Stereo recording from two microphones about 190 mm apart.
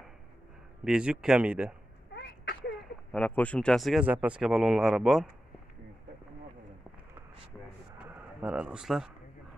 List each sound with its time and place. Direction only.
0.8 s speech: 5° right (ahead or behind)
2.1 s a sound: 65° left (ahead or behind)
3.1 s speech: 5° left (ahead or behind)
8.0 s speech: 5° right (ahead or behind)